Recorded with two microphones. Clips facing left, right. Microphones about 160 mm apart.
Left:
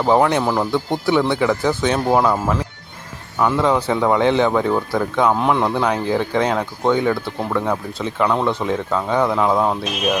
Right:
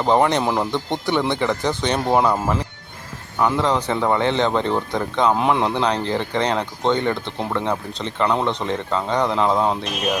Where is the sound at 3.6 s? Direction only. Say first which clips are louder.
Left 3 dB; 10° left (ahead or behind).